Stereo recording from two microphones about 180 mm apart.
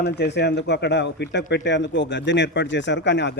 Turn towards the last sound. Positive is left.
turn(degrees=75)  # may be behind; listen again after turning